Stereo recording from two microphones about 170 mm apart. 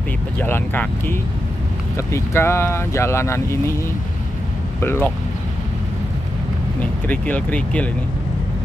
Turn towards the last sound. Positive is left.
turn(degrees=10)  # may be behind; listen again after turning